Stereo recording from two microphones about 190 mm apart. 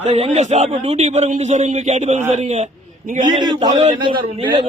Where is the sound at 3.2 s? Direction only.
25° right (ahead or behind).